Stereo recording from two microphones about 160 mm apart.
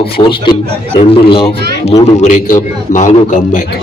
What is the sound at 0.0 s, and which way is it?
A man's voice, 30° left (ahead or behind).